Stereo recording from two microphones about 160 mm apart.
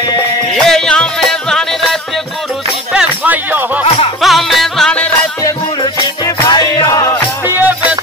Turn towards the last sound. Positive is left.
turn(degrees=-10)  # may be behind; listen again after turning